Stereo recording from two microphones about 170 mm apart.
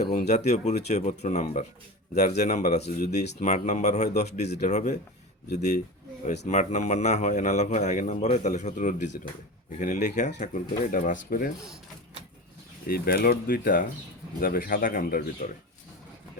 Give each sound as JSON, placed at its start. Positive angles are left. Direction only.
{"t": 0.0, "sound": "a man's voice", "side_deg": 45}
{"t": 12.9, "sound": "speech", "side_deg": 60}